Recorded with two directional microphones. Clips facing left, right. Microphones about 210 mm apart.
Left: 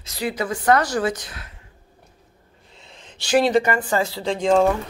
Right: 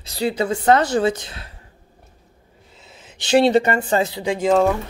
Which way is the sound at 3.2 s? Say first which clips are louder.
Right 3 dB; 25° right (ahead or behind).